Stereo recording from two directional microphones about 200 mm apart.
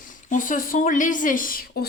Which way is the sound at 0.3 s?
40° left (ahead or behind).